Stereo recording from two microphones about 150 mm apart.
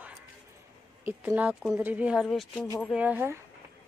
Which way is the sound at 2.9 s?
10° right (ahead or behind).